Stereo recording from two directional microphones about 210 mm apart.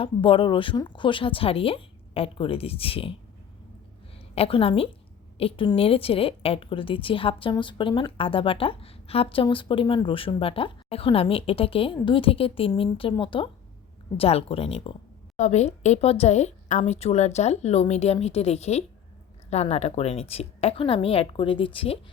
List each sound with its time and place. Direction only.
0.0 s a woman's voice: 25° left (ahead or behind)
4.4 s a woman's voice: 25° left (ahead or behind)